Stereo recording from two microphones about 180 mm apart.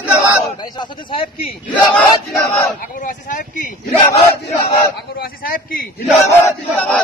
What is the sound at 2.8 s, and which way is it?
Speech, 45° left (ahead or behind).